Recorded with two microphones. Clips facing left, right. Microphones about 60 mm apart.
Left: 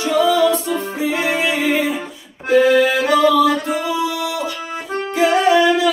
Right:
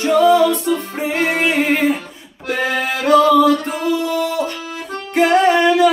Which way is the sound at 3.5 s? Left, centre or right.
Left.